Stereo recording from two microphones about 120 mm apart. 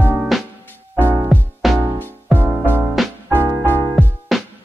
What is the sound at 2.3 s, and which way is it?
Music, 15° right (ahead or behind).